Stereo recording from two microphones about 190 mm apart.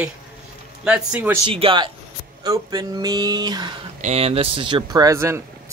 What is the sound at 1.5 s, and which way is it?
Speech, 30° right (ahead or behind).